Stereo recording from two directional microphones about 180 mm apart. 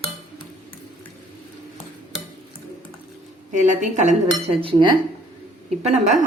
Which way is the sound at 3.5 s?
45° right (ahead or behind).